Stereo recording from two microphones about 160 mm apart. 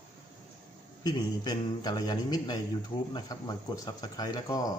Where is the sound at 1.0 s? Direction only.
25° left (ahead or behind).